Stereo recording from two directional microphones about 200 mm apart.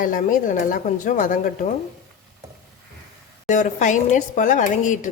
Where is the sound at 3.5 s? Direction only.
40° left (ahead or behind).